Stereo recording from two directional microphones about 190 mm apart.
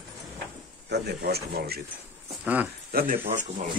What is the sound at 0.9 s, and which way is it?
Speech, 60° right (ahead or behind).